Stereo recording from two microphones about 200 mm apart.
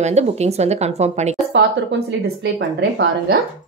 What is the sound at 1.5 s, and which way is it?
Speech, 60° right (ahead or behind).